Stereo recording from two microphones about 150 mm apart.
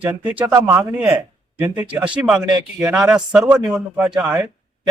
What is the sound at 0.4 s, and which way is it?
Speech, 25° right (ahead or behind).